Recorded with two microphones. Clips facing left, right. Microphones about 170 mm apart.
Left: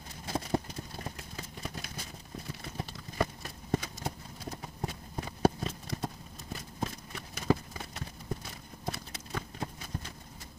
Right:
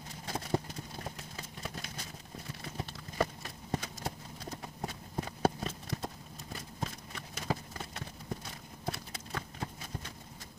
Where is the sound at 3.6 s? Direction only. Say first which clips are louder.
Left 4 dB; 5° left (ahead or behind).